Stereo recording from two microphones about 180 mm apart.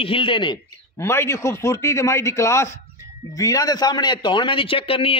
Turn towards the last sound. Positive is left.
turn(degrees=30)  # may be behind; listen again after turning